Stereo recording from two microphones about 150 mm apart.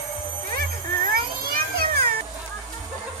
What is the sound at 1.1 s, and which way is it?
Children playing, 80° right.